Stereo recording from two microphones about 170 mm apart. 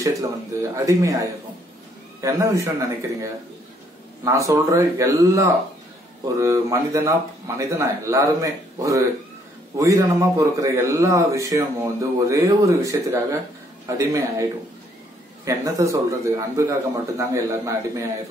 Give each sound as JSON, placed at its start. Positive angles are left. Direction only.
{"t": 0.7, "sound": "speech", "side_deg": -20}
{"t": 15.4, "sound": "speech", "side_deg": -20}